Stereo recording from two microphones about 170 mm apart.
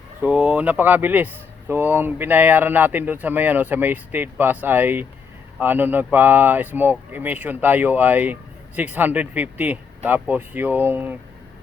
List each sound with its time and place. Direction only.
0.2 s speech: 5° right (ahead or behind)